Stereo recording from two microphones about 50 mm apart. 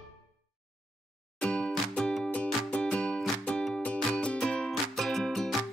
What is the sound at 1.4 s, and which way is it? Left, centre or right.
Music, left.